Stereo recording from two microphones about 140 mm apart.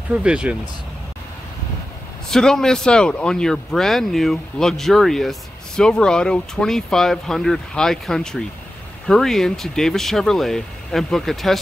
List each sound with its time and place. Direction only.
0.1 s speech: 10° right (ahead or behind)
2.2 s speech: 5° left (ahead or behind)